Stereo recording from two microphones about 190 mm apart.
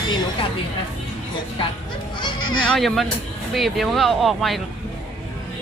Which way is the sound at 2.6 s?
Centre (ahead or behind).